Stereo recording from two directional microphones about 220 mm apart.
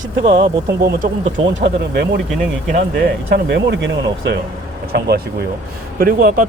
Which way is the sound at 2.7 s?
45° right (ahead or behind).